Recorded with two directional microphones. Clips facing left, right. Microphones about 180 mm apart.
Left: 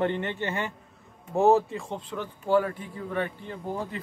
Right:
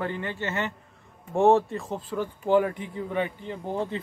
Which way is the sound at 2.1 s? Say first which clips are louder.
Right 2 dB; 15° right (ahead or behind).